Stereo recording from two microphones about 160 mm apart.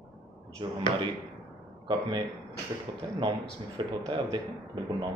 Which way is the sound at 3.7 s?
30° right (ahead or behind).